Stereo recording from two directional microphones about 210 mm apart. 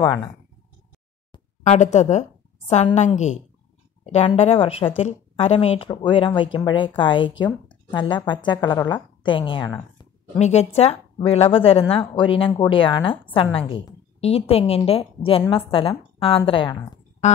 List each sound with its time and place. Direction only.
0.0 s speech: 20° left (ahead or behind)
1.6 s a woman's voice: 35° left (ahead or behind)
10.4 s a woman's voice: 30° left (ahead or behind)